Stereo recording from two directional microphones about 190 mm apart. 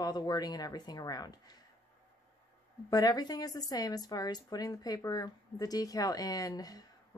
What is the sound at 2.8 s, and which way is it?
A woman's voice, 20° left (ahead or behind).